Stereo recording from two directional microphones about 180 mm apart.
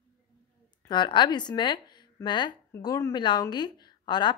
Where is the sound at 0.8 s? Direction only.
25° left (ahead or behind).